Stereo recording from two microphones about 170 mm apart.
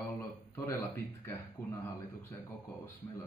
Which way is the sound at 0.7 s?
15° left (ahead or behind).